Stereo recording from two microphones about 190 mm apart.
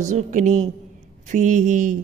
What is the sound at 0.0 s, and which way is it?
Speech, 40° right (ahead or behind).